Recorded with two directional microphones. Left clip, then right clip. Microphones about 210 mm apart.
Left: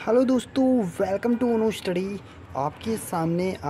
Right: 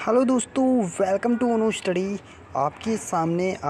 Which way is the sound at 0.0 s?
10° right (ahead or behind).